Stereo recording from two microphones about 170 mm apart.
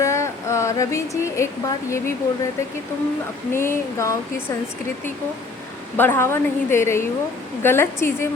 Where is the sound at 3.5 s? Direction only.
15° left (ahead or behind).